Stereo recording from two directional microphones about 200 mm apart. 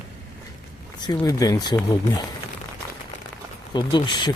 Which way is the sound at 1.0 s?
20° left (ahead or behind).